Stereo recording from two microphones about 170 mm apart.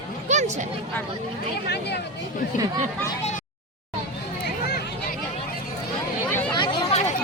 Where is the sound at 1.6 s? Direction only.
75° left (ahead or behind).